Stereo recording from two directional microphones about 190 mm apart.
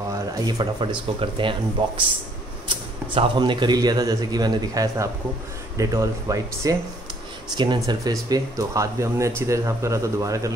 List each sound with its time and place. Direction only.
0.3 s a man's voice: 20° right (ahead or behind)
3.2 s a man's voice: 25° right (ahead or behind)